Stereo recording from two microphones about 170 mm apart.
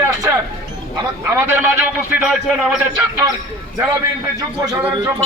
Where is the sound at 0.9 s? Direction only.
15° right (ahead or behind).